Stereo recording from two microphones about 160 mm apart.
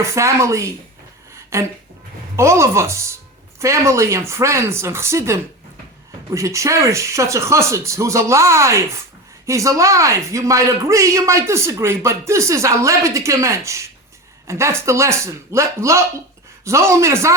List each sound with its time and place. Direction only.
0.0 s speech: 20° right (ahead or behind)